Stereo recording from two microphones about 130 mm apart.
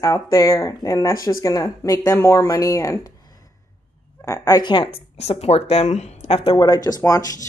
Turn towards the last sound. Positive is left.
turn(degrees=25)  # may be behind; listen again after turning